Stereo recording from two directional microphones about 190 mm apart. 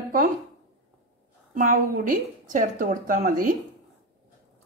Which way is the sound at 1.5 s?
45° right (ahead or behind).